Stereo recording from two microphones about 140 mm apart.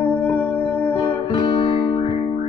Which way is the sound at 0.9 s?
40° left (ahead or behind).